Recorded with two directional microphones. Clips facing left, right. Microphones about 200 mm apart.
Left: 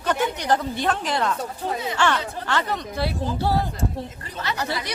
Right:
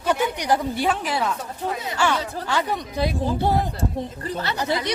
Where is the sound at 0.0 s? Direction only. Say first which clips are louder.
Right 1 dB; 10° right (ahead or behind).